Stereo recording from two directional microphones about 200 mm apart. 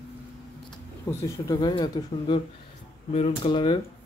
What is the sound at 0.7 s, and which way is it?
Speech, 15° left (ahead or behind).